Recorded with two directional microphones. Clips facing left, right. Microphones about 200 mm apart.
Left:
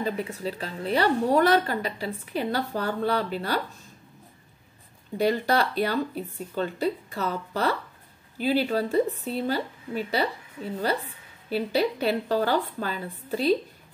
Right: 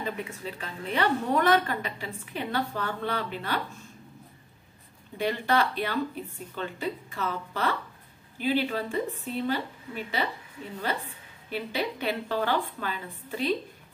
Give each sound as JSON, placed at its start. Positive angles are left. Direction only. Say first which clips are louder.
{"t": 0.0, "sound": "a woman's voice", "louder": "left 5 dB", "side_deg": 35}
{"t": 5.1, "sound": "a woman's voice", "louder": "left 3 dB", "side_deg": 40}